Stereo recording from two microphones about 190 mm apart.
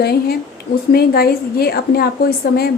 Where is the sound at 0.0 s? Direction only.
55° left (ahead or behind).